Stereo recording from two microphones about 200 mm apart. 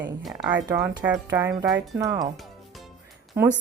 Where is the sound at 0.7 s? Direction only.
15° right (ahead or behind).